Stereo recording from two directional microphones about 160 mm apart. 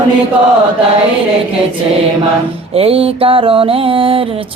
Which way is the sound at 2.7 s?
40° right (ahead or behind).